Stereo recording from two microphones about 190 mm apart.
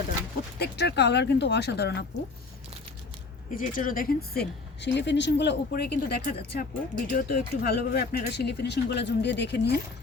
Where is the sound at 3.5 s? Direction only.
45° left (ahead or behind); by 9.7 s 65° left (ahead or behind).